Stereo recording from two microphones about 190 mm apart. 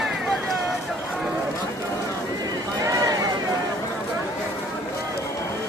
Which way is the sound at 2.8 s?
20° right (ahead or behind).